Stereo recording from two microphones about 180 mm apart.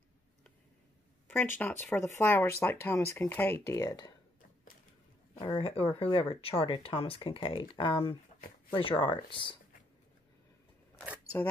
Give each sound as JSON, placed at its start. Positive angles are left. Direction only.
{"t": 1.6, "sound": "speech", "side_deg": 10}
{"t": 5.4, "sound": "speech", "side_deg": 30}